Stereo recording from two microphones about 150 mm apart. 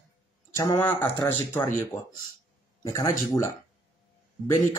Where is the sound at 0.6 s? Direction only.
20° left (ahead or behind).